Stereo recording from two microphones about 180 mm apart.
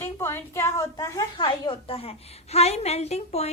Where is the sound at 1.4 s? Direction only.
25° left (ahead or behind).